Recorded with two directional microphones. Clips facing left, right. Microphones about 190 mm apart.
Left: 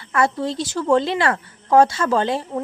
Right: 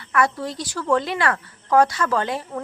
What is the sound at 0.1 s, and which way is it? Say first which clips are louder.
Speech: left 2 dB; 25° left (ahead or behind).